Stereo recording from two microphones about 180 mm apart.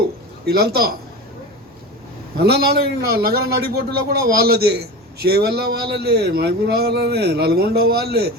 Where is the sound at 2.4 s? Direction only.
60° right (ahead or behind).